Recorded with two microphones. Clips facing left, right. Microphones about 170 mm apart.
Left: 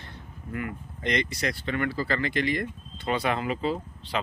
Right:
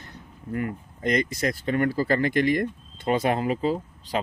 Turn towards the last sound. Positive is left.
turn(degrees=-40)  # may be behind; listen again after turning